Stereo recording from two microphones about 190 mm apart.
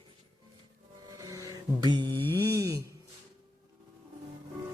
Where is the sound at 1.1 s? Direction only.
15° right (ahead or behind).